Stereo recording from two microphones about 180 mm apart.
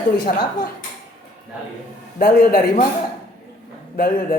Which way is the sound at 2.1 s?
55° left (ahead or behind).